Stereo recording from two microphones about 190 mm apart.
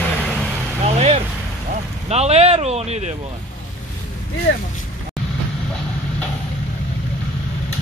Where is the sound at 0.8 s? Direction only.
35° right (ahead or behind).